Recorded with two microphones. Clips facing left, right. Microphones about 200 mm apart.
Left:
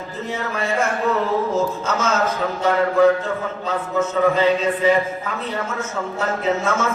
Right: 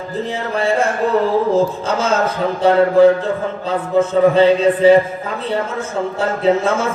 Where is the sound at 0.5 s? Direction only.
30° right (ahead or behind).